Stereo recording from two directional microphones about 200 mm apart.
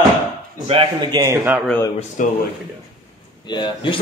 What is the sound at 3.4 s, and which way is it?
Speech, 20° left (ahead or behind).